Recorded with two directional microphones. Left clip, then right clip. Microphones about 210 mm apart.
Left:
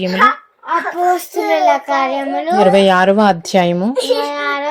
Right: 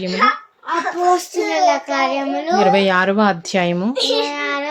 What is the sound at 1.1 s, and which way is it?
A child's voice, 10° left (ahead or behind).